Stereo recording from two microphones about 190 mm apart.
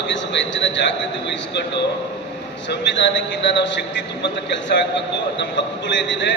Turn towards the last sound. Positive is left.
turn(degrees=70)  # may be behind; listen again after turning